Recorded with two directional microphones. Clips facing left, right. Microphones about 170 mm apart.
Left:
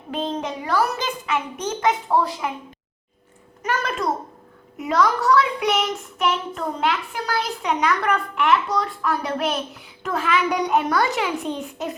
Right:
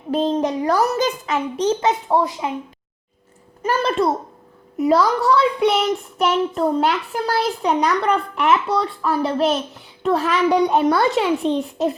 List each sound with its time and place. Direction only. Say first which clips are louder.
0.1 s a child's voice: right 7 dB; 40° right (ahead or behind); by 2.5 s 20° right (ahead or behind)
3.6 s a child's voice: right 6 dB; 30° right (ahead or behind)